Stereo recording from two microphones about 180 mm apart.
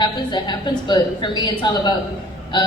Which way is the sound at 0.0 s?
25° left (ahead or behind).